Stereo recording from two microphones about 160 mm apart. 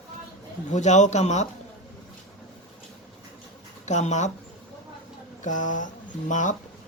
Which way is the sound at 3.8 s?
45° left (ahead or behind).